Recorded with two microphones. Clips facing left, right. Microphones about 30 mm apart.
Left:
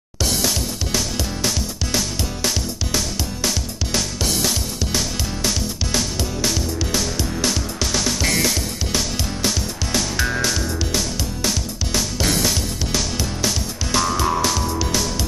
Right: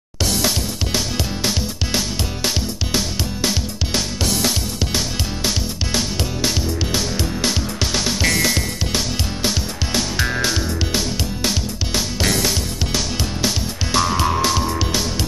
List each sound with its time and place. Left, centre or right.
0.9 s music: centre
5.9 s music: centre
13.9 s music: centre